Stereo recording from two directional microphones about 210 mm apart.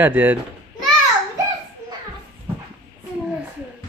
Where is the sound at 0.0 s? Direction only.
10° right (ahead or behind).